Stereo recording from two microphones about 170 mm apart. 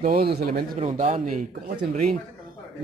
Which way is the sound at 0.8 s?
45° right (ahead or behind).